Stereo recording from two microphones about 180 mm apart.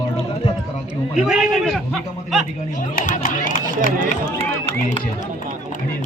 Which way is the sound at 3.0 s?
50° left (ahead or behind).